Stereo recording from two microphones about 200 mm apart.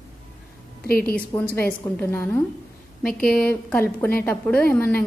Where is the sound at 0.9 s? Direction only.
50° left (ahead or behind).